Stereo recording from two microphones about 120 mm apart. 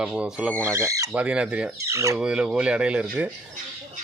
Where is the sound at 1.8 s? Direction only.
25° right (ahead or behind).